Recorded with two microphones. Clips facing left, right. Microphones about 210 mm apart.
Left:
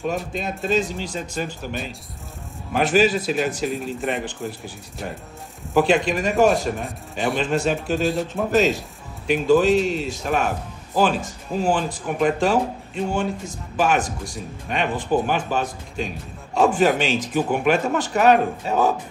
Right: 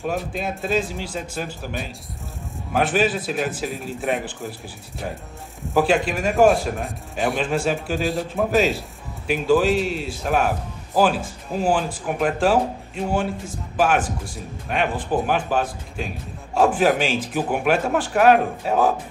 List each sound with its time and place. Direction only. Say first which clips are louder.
0.0 s a man's voice: even; 5° right (ahead or behind)